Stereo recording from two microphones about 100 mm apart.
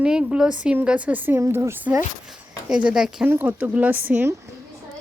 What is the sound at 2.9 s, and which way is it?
Speech, 5° right (ahead or behind).